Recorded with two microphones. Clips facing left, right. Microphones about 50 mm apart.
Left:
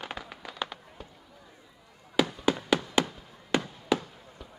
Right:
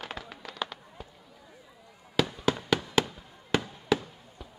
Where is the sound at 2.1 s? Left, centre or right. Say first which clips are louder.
Left 1 dB; centre.